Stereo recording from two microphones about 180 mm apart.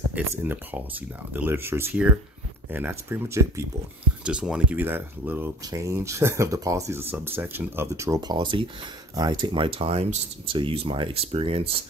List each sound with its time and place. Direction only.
0.1 s speech: 10° right (ahead or behind); by 11.7 s 30° right (ahead or behind)